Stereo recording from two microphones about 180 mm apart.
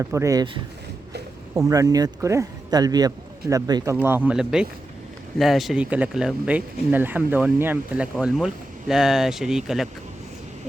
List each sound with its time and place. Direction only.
0.0 s speech: 15° right (ahead or behind)